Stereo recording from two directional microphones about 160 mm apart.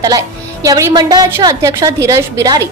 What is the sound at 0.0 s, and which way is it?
A woman's voice, 20° right (ahead or behind).